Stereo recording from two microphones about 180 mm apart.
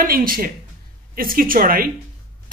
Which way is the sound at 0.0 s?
50° right (ahead or behind).